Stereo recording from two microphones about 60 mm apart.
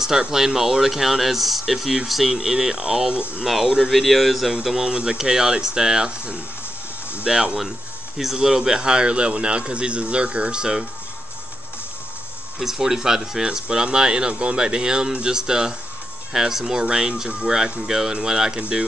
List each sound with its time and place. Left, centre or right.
0.0 s speech: centre
3.4 s speech: centre
4.6 s speech: centre
12.5 s speech: centre